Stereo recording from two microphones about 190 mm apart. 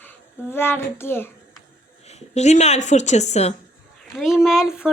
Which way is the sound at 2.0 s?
35° left (ahead or behind).